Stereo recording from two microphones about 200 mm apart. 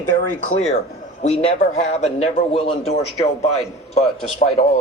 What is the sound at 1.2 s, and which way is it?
A man's voice, 30° left (ahead or behind).